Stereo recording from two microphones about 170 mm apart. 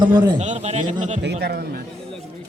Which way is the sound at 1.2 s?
75° right (ahead or behind).